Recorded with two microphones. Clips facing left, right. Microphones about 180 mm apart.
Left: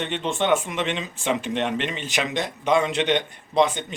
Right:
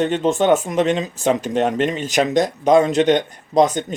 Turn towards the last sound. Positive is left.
turn(degrees=-40)  # may be behind; listen again after turning